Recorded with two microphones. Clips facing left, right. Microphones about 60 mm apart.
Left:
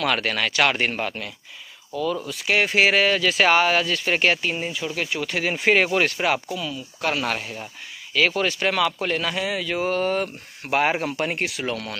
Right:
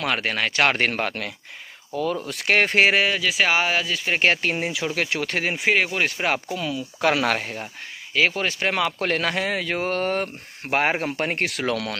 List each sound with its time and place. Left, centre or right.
0.0 s speech: right
0.7 s speech: right
1.9 s speech: right
2.2 s speech: right
3.1 s speech: centre
4.4 s speech: right
5.7 s speech: centre
6.7 s speech: right
8.1 s speech: right
9.0 s speech: right
11.3 s speech: right
11.6 s speech: right